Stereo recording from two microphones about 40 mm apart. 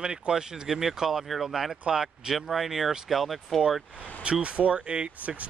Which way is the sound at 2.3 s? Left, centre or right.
Centre.